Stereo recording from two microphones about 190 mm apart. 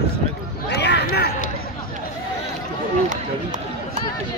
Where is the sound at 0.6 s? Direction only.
65° left (ahead or behind).